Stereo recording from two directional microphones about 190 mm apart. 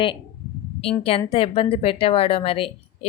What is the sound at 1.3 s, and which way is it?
Speech, 30° left (ahead or behind).